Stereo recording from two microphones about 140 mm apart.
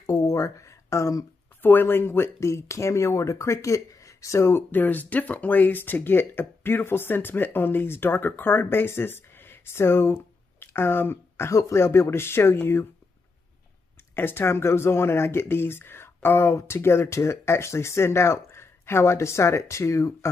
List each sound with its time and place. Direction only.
0.0 s speech: 25° left (ahead or behind)
14.1 s speech: 15° left (ahead or behind)